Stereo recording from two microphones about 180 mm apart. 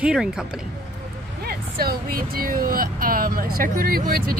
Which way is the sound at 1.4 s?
60° right (ahead or behind).